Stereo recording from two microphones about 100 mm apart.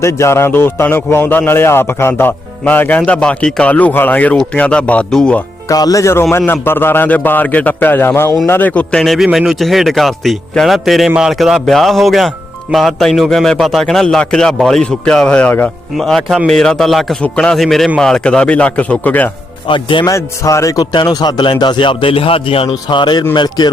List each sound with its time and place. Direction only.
0.0 s a man's voice: 30° left (ahead or behind); by 5.4 s 10° left (ahead or behind)
5.6 s a man's voice: 35° left (ahead or behind); by 19.3 s 15° left (ahead or behind)
19.6 s speech: 55° left (ahead or behind)
20.1 s a man's voice: 30° left (ahead or behind)
20.9 s a man's voice: 45° left (ahead or behind)